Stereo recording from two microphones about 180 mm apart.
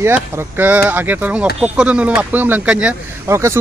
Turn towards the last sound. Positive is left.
turn(degrees=-15)  # may be behind; listen again after turning